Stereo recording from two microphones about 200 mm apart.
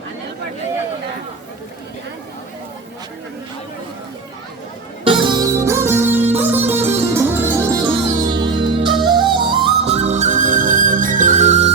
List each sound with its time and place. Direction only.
5.0 s music: 25° right (ahead or behind)